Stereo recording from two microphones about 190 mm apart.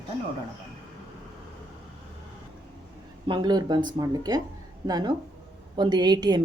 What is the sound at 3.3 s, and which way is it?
A woman's voice, 20° right (ahead or behind).